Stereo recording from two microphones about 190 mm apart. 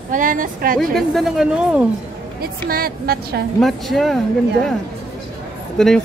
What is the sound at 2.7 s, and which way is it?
Speech, 55° right (ahead or behind).